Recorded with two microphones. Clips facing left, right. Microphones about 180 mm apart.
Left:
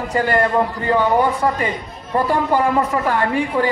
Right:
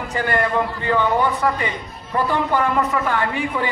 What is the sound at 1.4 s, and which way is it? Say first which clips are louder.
Speech: left 2 dB; 25° left (ahead or behind).